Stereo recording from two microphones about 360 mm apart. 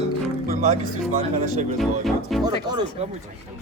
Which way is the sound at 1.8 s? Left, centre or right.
Centre.